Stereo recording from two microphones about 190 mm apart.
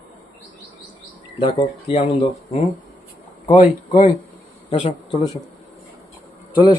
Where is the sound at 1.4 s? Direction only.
30° left (ahead or behind).